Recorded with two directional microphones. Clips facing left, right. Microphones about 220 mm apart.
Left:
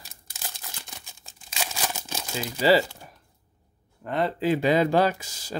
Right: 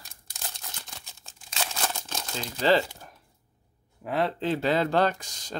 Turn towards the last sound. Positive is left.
turn(degrees=5)  # may be behind; listen again after turning